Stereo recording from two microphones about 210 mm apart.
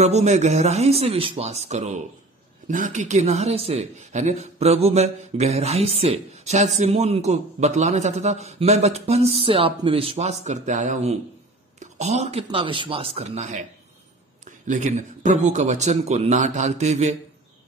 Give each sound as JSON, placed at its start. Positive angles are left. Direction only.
{"t": 0.0, "sound": "speech", "side_deg": -30}